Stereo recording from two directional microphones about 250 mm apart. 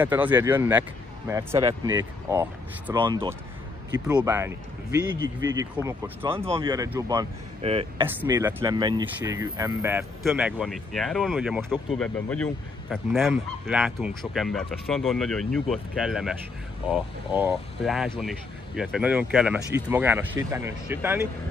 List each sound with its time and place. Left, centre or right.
0.0 s speech: centre
6.4 s speech: centre
8.2 s speech: centre